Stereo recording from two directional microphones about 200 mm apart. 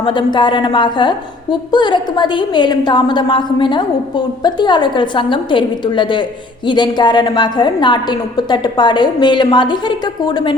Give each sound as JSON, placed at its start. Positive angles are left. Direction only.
{"t": 0.0, "sound": "a woman's voice", "side_deg": 25}